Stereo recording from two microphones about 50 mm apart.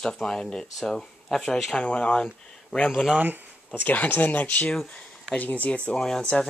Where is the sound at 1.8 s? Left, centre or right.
Left.